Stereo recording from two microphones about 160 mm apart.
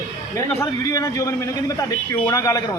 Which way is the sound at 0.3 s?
20° left (ahead or behind).